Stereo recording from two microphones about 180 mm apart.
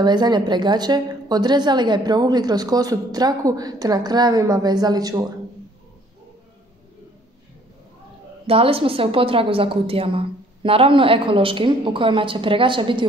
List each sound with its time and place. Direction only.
0.0 s a woman's voice: 25° right (ahead or behind)
8.5 s a woman's voice: 30° right (ahead or behind)